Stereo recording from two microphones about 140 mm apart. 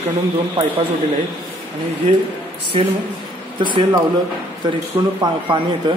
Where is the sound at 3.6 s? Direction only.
35° right (ahead or behind).